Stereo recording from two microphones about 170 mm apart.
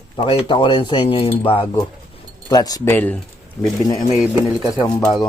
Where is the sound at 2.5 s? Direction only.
20° left (ahead or behind).